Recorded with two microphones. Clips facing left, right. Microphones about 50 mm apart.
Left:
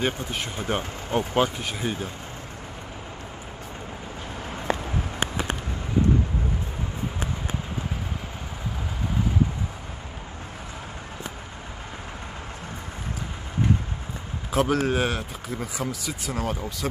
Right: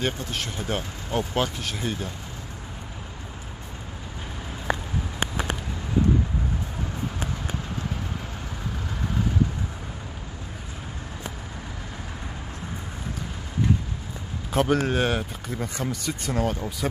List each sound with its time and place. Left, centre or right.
0.0 s speech: centre
14.5 s speech: centre